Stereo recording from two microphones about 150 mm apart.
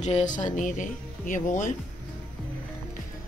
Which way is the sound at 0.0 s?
55° left (ahead or behind).